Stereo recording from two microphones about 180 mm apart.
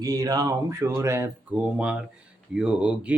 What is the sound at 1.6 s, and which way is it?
Speech, 5° right (ahead or behind).